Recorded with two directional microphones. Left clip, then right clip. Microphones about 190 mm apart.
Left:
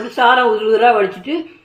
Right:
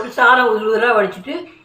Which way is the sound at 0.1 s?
35° left (ahead or behind).